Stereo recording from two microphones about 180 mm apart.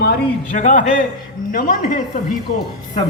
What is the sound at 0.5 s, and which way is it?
A woman's voice, 45° left (ahead or behind).